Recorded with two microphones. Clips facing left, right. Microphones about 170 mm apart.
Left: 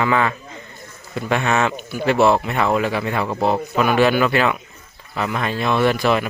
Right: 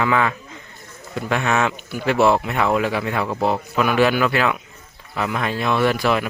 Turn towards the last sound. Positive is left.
turn(degrees=-5)  # may be behind; listen again after turning